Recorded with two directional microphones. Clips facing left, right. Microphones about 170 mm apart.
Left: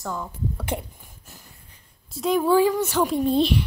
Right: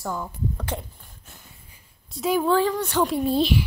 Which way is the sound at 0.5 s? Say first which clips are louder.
Left 2 dB; 10° left (ahead or behind).